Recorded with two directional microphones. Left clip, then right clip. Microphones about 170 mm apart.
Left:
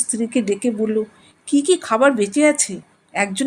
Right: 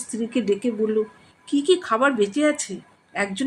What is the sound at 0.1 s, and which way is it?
Speech, 30° left (ahead or behind).